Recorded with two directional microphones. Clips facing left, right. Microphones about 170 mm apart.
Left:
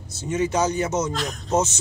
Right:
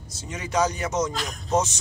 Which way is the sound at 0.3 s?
25° left (ahead or behind).